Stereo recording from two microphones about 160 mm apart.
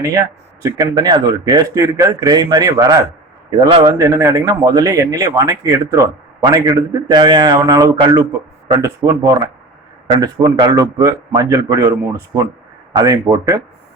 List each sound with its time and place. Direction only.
0.6 s speech: 25° right (ahead or behind)